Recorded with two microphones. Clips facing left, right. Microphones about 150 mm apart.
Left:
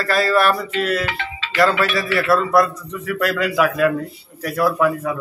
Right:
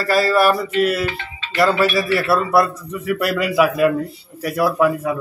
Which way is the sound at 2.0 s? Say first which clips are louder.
Even; 5° right (ahead or behind).